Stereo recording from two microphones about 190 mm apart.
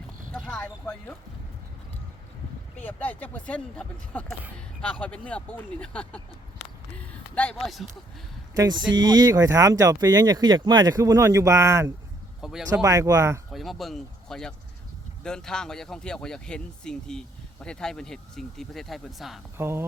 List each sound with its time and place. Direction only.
0.3 s a sound: 5° left (ahead or behind)
2.8 s speech: 10° left (ahead or behind)
8.5 s speech: 20° right (ahead or behind)
12.4 s speech: centre (ahead or behind)
12.8 s speech: 15° right (ahead or behind)
13.5 s speech: centre (ahead or behind)
19.5 s speech: 15° right (ahead or behind)